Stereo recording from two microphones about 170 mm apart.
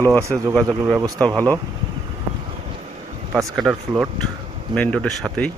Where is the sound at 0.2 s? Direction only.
15° right (ahead or behind).